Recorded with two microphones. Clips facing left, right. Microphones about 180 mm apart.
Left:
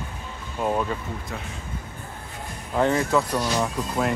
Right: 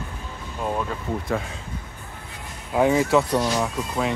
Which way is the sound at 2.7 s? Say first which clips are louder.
Right 3 dB; 10° right (ahead or behind).